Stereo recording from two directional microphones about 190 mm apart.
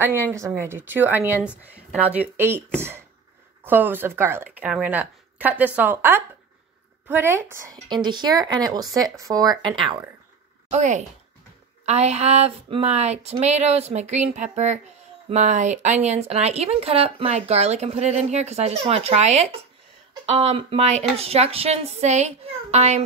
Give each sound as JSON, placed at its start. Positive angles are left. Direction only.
{"t": 0.3, "sound": "speech", "side_deg": -15}
{"t": 3.6, "sound": "a woman's voice", "side_deg": -10}
{"t": 10.7, "sound": "speech", "side_deg": -40}